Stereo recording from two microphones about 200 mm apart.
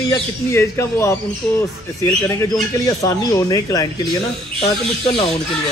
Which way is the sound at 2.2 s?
15° left (ahead or behind).